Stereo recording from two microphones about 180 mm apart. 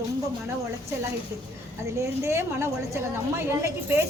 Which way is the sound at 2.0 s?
15° right (ahead or behind).